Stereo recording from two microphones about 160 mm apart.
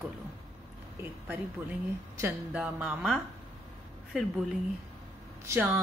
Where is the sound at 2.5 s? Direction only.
5° right (ahead or behind).